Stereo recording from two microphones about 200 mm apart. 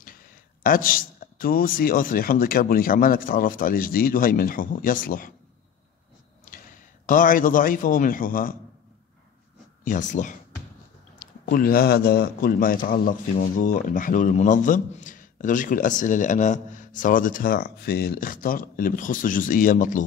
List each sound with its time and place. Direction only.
0.0 s a man's voice: 45° left (ahead or behind)
6.4 s a man's voice: 45° left (ahead or behind)
9.8 s a man's voice: 40° left (ahead or behind)